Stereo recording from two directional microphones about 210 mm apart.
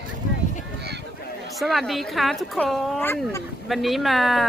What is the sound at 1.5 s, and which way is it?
Speech, centre (ahead or behind).